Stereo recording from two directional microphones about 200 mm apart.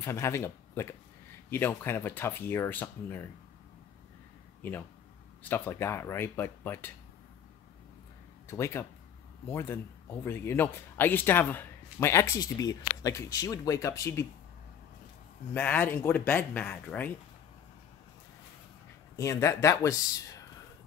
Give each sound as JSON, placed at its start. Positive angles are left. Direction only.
{"t": 0.0, "sound": "speech", "side_deg": 15}
{"t": 5.4, "sound": "speech", "side_deg": 10}
{"t": 8.5, "sound": "speech", "side_deg": 15}
{"t": 15.5, "sound": "speech", "side_deg": 10}
{"t": 19.1, "sound": "speech", "side_deg": 15}